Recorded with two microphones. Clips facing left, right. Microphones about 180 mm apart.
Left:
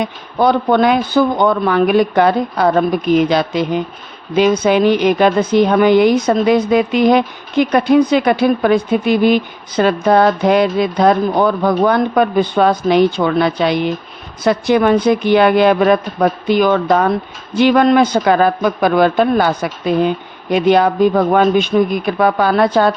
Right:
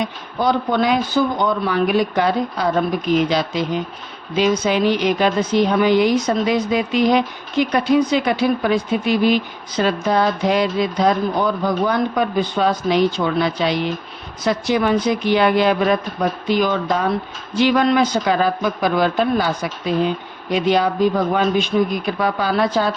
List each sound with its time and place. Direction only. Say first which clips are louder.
0.0 s speech: left 5 dB; 60° left (ahead or behind)